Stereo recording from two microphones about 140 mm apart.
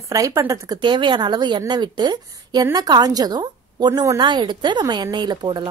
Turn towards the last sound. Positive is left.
turn(degrees=-35)  # may be behind; listen again after turning